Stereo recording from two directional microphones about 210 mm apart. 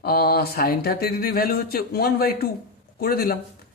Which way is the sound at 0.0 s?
45° left (ahead or behind).